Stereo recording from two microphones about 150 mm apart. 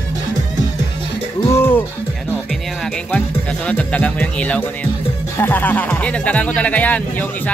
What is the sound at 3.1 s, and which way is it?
Music, 10° left (ahead or behind).